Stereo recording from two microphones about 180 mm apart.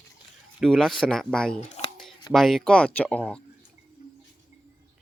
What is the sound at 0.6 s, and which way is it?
Speech, centre (ahead or behind).